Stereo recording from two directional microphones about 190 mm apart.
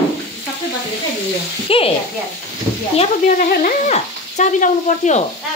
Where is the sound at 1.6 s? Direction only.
30° left (ahead or behind).